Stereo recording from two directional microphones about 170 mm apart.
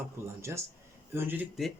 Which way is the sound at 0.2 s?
15° right (ahead or behind).